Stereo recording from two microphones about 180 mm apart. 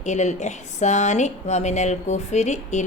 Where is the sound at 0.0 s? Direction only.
40° left (ahead or behind).